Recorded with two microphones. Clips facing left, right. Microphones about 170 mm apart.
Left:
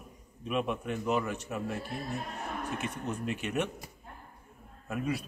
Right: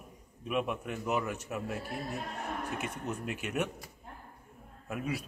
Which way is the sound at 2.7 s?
10° right (ahead or behind).